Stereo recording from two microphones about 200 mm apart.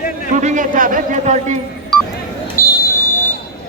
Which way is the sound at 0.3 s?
40° right (ahead or behind).